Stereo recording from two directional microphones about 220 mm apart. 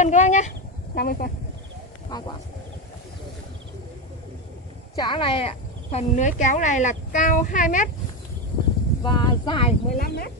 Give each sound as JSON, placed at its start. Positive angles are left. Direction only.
{"t": 0.0, "sound": "chicken", "side_deg": 35}
{"t": 0.9, "sound": "speech", "side_deg": 45}
{"t": 2.0, "sound": "speech", "side_deg": 20}
{"t": 4.9, "sound": "speech", "side_deg": 20}
{"t": 9.0, "sound": "speech", "side_deg": 20}
{"t": 9.9, "sound": "speech", "side_deg": 45}